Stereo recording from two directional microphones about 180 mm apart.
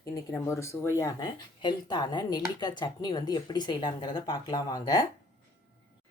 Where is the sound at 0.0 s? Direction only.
15° left (ahead or behind).